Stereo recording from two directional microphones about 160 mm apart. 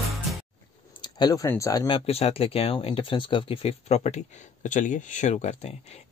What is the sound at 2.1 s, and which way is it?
Speech, 35° left (ahead or behind).